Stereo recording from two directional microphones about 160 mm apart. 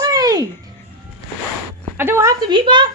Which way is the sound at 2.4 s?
30° right (ahead or behind).